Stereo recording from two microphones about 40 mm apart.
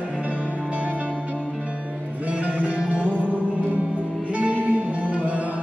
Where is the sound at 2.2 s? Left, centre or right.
Right.